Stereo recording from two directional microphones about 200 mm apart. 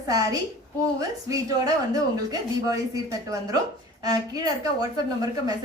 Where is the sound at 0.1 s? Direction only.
20° right (ahead or behind).